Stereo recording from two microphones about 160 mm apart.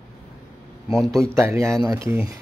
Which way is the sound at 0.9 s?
Centre (ahead or behind).